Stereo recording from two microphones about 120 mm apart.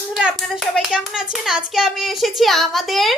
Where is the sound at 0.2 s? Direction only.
5° right (ahead or behind).